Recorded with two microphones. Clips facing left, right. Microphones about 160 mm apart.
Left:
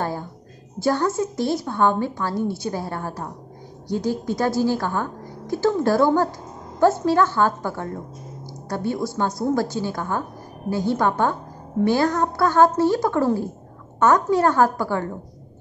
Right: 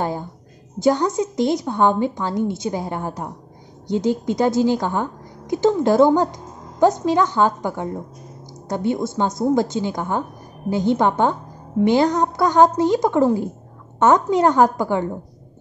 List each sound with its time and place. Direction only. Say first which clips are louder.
0.7 s a woman's voice: right 3 dB; 20° right (ahead or behind)